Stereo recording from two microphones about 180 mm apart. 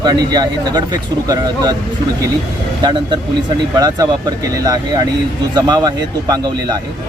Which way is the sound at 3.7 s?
20° right (ahead or behind).